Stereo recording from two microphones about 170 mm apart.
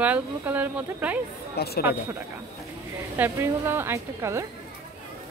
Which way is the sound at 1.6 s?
70° left (ahead or behind).